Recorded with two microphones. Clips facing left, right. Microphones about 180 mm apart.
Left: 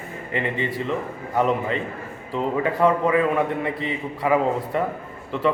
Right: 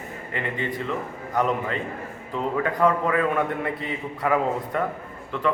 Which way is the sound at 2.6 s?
10° left (ahead or behind).